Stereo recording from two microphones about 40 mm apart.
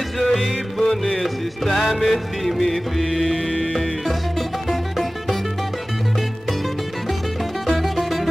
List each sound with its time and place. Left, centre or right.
0.2 s music: centre
7.6 s music: centre